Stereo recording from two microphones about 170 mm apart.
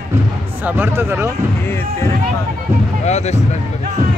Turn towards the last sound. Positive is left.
turn(degrees=40)  # may be behind; listen again after turning